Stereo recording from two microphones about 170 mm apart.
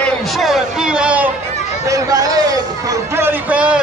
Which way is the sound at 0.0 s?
Centre (ahead or behind).